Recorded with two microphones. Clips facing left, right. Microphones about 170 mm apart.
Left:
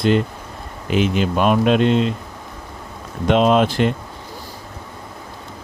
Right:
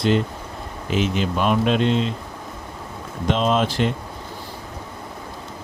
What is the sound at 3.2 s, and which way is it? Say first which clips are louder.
Speech: left 5 dB; 65° left (ahead or behind).